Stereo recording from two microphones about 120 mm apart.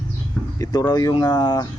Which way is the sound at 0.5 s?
30° left (ahead or behind).